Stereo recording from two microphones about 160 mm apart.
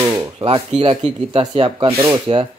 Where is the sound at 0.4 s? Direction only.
35° right (ahead or behind).